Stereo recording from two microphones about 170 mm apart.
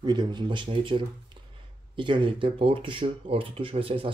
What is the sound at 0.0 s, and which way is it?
Speech, 25° right (ahead or behind).